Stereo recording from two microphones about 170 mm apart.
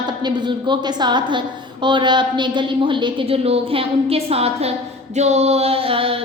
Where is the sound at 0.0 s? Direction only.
25° right (ahead or behind).